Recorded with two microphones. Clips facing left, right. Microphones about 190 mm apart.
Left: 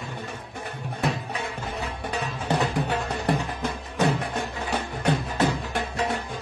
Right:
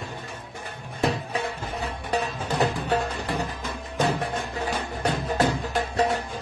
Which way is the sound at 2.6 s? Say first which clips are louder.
Right 4 dB; 40° right (ahead or behind).